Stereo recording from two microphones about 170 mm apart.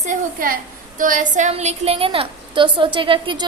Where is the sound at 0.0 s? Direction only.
50° right (ahead or behind).